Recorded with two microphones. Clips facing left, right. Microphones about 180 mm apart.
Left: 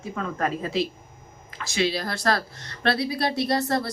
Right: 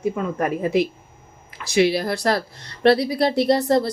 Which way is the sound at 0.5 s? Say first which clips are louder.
Right 6 dB; 55° right (ahead or behind).